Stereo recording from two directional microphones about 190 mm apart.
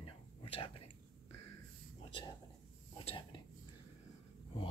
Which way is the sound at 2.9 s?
25° left (ahead or behind).